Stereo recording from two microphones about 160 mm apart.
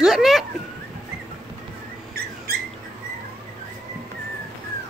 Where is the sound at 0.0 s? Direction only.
Centre (ahead or behind).